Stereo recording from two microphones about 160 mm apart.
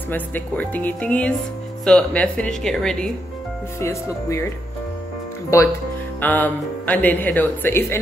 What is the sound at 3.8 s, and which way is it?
Speech, 15° left (ahead or behind).